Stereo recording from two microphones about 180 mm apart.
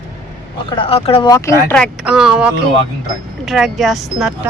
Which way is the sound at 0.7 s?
30° left (ahead or behind).